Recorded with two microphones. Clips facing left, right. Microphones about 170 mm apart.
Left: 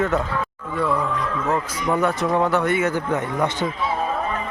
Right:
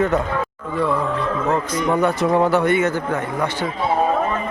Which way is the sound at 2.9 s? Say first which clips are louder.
Even; 20° left (ahead or behind).